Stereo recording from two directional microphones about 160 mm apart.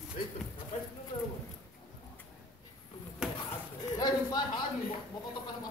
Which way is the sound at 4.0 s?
25° left (ahead or behind).